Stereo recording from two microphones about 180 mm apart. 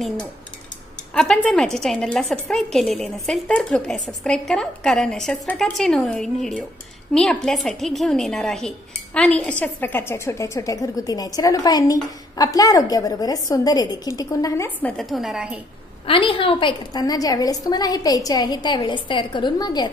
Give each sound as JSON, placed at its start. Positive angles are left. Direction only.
{"t": 1.1, "sound": "a woman's voice", "side_deg": 5}
{"t": 16.1, "sound": "a woman's voice", "side_deg": 30}